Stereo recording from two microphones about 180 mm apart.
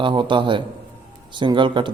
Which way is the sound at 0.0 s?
25° right (ahead or behind).